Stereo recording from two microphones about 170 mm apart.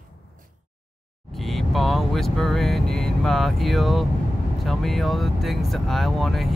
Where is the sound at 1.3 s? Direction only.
Centre (ahead or behind).